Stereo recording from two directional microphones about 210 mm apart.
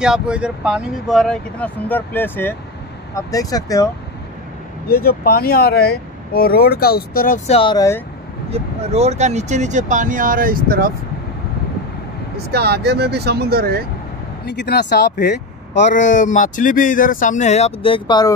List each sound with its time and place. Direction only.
0.0 s speech: 5° right (ahead or behind); by 3.9 s 15° left (ahead or behind)
4.8 s speech: 45° left (ahead or behind)
7.4 s speech: 25° left (ahead or behind)
8.5 s speech: 30° right (ahead or behind)
12.4 s speech: 50° right (ahead or behind)
14.4 s speech: 55° left (ahead or behind)
15.9 s speech: 40° left (ahead or behind); by 18.3 s 20° left (ahead or behind)